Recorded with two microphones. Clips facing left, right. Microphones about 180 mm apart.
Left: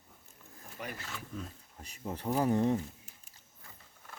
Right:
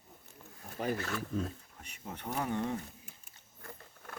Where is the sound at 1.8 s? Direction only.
35° left (ahead or behind).